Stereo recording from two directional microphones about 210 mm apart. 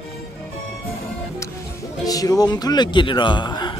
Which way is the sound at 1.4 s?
15° left (ahead or behind).